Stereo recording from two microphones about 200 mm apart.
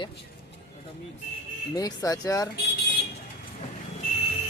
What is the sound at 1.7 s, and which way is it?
Speech, 20° left (ahead or behind).